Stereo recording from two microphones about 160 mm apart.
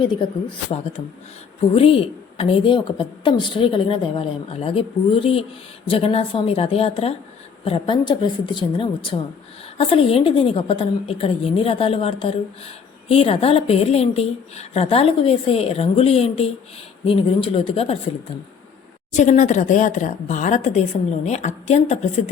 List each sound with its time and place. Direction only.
1.7 s a woman's voice: 35° left (ahead or behind)
19.1 s speech: 50° left (ahead or behind)